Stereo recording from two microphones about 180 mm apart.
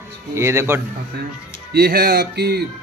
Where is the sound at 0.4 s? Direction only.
15° right (ahead or behind).